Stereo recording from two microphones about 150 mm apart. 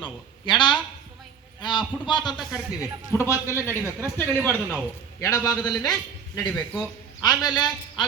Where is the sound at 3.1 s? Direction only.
20° left (ahead or behind).